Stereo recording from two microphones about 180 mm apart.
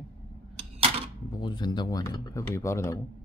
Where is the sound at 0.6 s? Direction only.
35° right (ahead or behind).